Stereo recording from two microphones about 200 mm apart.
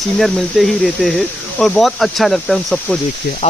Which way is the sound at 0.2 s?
Centre (ahead or behind).